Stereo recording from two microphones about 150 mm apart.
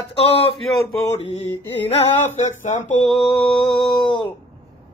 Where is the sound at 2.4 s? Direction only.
50° left (ahead or behind).